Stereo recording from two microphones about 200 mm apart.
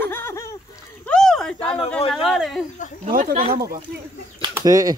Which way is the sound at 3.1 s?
40° right (ahead or behind).